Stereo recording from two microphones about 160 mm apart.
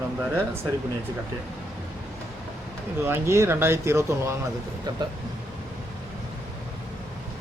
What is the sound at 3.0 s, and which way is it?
Speech, 15° right (ahead or behind).